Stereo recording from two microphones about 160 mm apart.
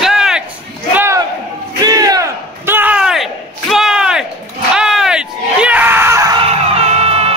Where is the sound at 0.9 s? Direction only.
15° right (ahead or behind).